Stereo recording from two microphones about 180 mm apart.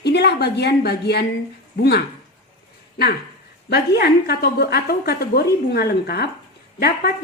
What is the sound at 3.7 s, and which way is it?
A woman's voice, 65° left (ahead or behind).